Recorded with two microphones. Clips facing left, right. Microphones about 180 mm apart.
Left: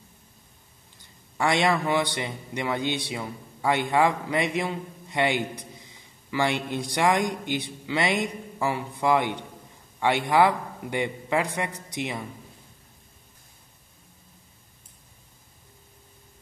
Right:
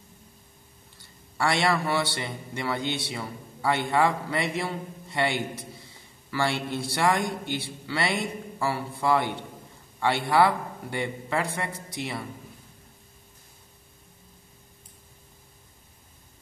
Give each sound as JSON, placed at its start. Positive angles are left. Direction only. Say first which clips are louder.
{"t": 1.4, "sound": "a man's voice", "louder": "left 2 dB", "side_deg": 15}